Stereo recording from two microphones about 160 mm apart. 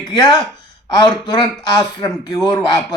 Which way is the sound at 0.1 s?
25° left (ahead or behind).